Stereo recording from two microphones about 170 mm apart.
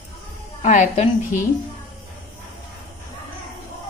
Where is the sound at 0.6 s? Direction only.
40° left (ahead or behind).